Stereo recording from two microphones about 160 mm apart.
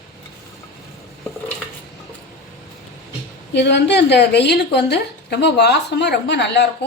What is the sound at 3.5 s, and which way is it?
A woman's voice, 90° left.